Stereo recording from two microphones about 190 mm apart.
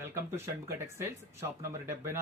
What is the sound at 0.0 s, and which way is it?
Speech, 15° right (ahead or behind).